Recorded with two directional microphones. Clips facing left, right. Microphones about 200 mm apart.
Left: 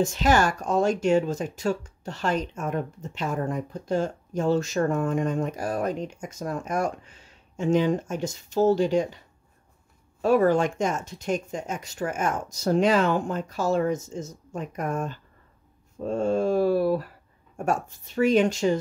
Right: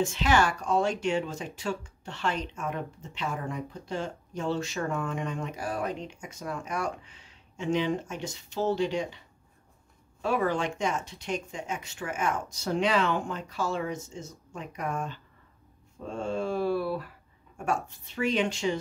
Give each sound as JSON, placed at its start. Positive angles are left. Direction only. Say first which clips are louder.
{"t": 0.0, "sound": "speech", "louder": "left 3 dB", "side_deg": 40}
{"t": 10.2, "sound": "speech", "louder": "left 7 dB", "side_deg": 45}